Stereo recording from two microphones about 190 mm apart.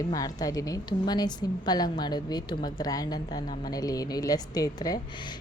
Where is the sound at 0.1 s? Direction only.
20° left (ahead or behind).